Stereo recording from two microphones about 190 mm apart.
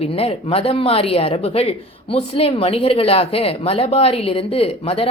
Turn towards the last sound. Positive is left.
turn(degrees=30)  # may be behind; listen again after turning